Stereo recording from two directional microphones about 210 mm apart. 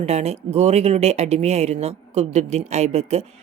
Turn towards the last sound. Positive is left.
turn(degrees=-30)  # may be behind; listen again after turning